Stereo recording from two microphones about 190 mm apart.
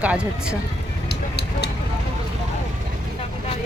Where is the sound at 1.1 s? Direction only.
60° left (ahead or behind).